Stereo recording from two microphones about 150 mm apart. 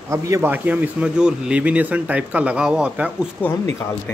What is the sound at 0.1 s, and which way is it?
A man's voice, 15° right (ahead or behind).